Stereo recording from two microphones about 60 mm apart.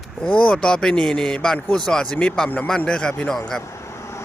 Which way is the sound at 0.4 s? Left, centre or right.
Centre.